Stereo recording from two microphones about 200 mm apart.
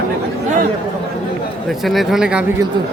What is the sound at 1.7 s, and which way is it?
Speech, centre (ahead or behind).